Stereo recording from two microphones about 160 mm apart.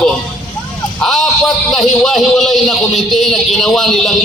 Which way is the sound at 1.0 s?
Centre (ahead or behind).